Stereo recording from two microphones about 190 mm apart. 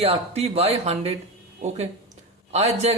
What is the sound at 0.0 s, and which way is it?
Speech, 30° right (ahead or behind).